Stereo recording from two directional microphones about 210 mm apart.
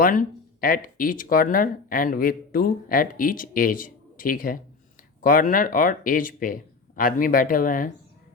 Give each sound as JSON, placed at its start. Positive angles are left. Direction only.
{"t": 0.0, "sound": "speech", "side_deg": 40}